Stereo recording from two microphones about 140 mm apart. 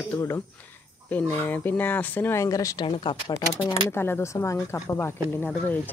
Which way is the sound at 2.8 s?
40° left (ahead or behind).